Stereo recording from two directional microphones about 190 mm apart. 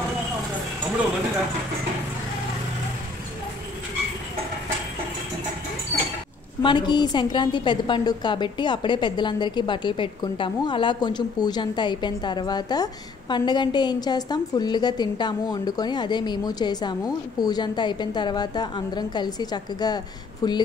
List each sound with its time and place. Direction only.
6.6 s a woman's voice: 25° left (ahead or behind)